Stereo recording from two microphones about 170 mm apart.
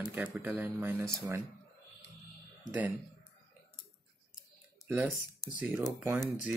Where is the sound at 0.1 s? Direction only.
10° right (ahead or behind).